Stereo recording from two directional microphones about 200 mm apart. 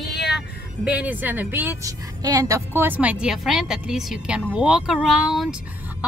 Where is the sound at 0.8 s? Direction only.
10° right (ahead or behind).